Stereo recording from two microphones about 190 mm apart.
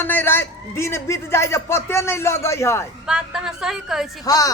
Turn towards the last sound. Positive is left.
turn(degrees=20)  # may be behind; listen again after turning